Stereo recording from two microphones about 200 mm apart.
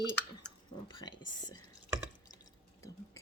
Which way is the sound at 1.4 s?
20° left (ahead or behind).